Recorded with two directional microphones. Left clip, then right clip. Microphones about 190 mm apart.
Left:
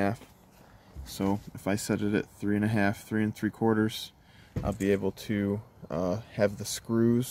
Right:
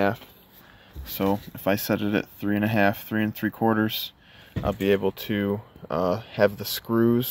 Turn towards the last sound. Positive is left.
turn(degrees=0)  # may be behind; listen again after turning